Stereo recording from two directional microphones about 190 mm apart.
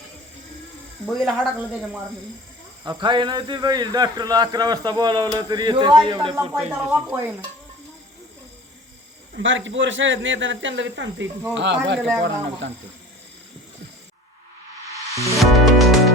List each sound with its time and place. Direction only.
1.0 s speech: centre (ahead or behind)
2.8 s a man's voice: 25° right (ahead or behind)
6.7 s speech: 10° right (ahead or behind)
9.3 s speech: 80° right
15.4 s music: centre (ahead or behind)